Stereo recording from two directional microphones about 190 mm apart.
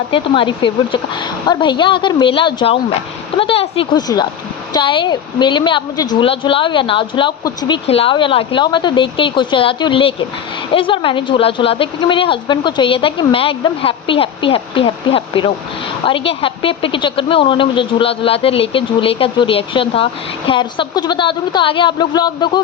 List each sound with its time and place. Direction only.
0.1 s speech: 25° left (ahead or behind)